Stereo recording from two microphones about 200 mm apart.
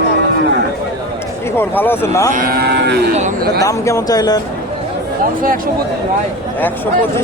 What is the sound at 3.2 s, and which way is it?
Speech, 50° right (ahead or behind).